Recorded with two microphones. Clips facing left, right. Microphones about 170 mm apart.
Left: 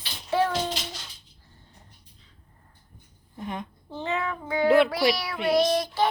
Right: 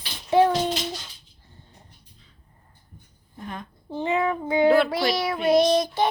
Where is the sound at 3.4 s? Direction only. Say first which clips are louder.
Left 2 dB; 20° left (ahead or behind).